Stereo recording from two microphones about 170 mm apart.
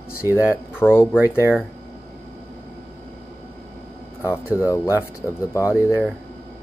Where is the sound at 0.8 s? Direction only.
15° left (ahead or behind).